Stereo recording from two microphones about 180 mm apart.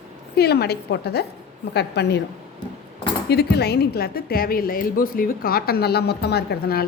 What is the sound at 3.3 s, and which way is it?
A woman's voice, 65° left (ahead or behind).